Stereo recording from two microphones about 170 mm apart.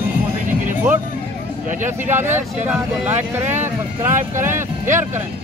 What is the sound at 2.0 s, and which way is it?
Speech, 15° right (ahead or behind).